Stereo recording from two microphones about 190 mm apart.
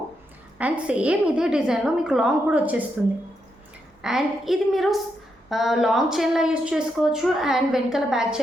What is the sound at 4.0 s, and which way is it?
A woman's voice, centre (ahead or behind).